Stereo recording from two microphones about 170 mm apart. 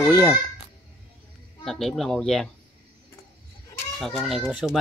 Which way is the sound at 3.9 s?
Centre (ahead or behind).